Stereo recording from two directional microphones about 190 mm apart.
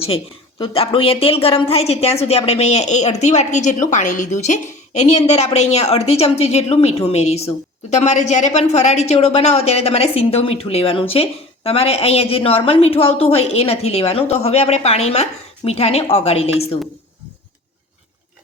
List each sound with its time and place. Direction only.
0.6 s a woman's voice: 30° left (ahead or behind)